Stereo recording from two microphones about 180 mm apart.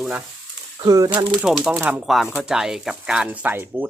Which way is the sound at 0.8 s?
20° right (ahead or behind).